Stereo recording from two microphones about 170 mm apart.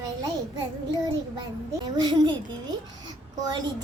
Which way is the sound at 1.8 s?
25° right (ahead or behind).